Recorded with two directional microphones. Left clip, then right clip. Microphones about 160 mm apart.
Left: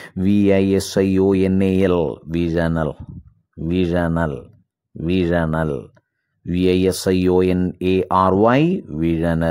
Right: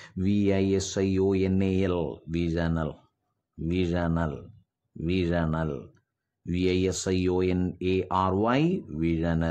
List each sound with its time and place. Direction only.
0.0 s speech: 35° left (ahead or behind)